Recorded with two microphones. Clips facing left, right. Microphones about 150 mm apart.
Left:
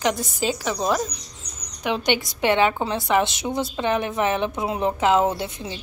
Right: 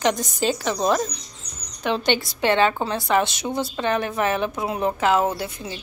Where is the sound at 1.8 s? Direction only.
15° left (ahead or behind).